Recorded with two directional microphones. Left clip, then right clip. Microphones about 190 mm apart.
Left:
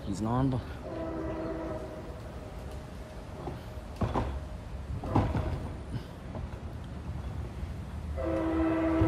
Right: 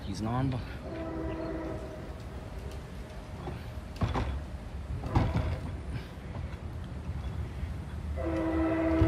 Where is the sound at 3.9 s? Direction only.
35° left (ahead or behind).